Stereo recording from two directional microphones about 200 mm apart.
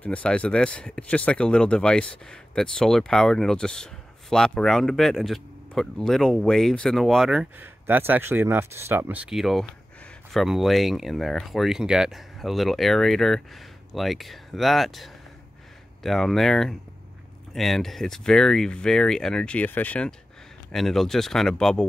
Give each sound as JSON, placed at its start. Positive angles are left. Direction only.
{"t": 0.0, "sound": "speech", "side_deg": 5}